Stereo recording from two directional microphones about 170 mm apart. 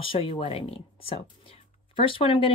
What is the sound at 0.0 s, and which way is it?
Speech, 30° left (ahead or behind).